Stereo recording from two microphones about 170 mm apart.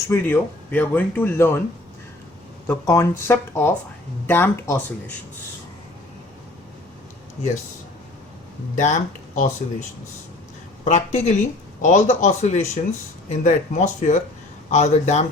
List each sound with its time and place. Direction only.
0.1 s speech: 10° left (ahead or behind)
2.6 s speech: 15° left (ahead or behind)
8.7 s speech: 45° left (ahead or behind)
10.8 s speech: 40° left (ahead or behind)